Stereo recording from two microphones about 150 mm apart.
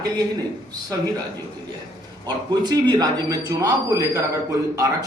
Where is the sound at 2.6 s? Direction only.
25° right (ahead or behind).